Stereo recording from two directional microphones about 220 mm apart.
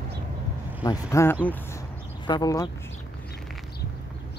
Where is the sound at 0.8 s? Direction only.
15° left (ahead or behind).